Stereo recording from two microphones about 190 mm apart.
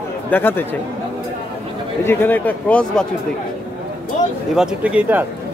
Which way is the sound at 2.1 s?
10° left (ahead or behind).